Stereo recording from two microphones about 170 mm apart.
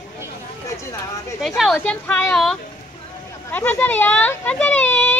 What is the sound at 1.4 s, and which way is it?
Speech, centre (ahead or behind).